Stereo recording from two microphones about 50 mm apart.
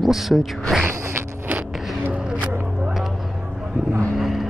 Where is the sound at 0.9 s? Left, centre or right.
Right.